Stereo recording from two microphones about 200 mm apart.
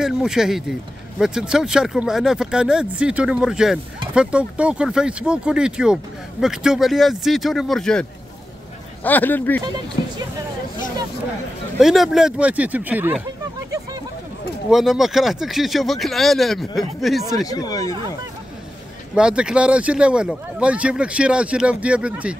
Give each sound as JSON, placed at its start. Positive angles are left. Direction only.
{"t": 0.0, "sound": "speech", "side_deg": -5}
{"t": 11.8, "sound": "speech", "side_deg": 0}
{"t": 14.7, "sound": "speech", "side_deg": 0}
{"t": 17.5, "sound": "speech", "side_deg": 20}
{"t": 19.1, "sound": "speech", "side_deg": -5}